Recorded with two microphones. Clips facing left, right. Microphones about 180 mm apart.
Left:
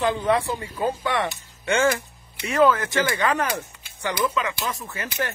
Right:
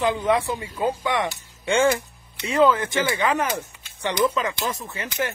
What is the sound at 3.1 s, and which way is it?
Speech, 15° right (ahead or behind).